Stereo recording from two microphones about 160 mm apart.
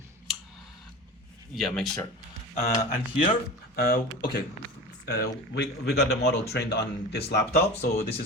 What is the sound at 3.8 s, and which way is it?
Speech, 70° left (ahead or behind).